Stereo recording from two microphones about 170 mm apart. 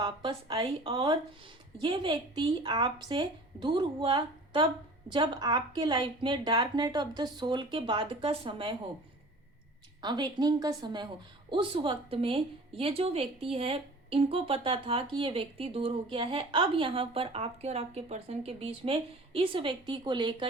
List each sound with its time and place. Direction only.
0.0 s a woman's voice: 25° right (ahead or behind)
10.0 s a woman's voice: 25° right (ahead or behind)